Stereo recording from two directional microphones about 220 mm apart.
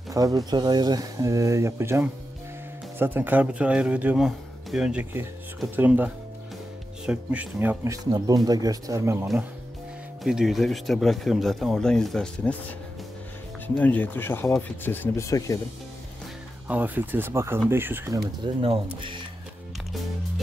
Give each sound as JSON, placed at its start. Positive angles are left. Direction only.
{"t": 0.1, "sound": "speech", "side_deg": -15}
{"t": 10.2, "sound": "speech", "side_deg": 0}
{"t": 13.7, "sound": "speech", "side_deg": 5}
{"t": 16.6, "sound": "speech", "side_deg": -5}
{"t": 18.4, "sound": "speech", "side_deg": -25}